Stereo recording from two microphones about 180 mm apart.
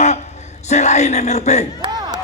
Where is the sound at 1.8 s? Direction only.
20° right (ahead or behind).